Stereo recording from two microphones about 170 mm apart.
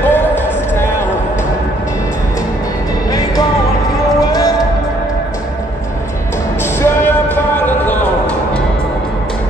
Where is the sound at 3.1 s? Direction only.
20° left (ahead or behind).